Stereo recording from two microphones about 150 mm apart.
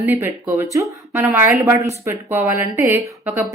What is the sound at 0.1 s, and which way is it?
Speech, 15° right (ahead or behind).